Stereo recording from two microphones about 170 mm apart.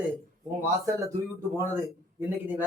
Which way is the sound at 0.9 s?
15° right (ahead or behind).